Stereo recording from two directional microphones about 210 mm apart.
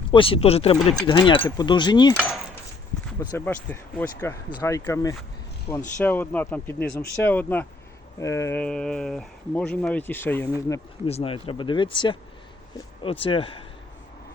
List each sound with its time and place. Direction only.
0.1 s speech: 25° left (ahead or behind)
3.2 s speech: 10° left (ahead or behind)
11.0 s speech: 25° left (ahead or behind)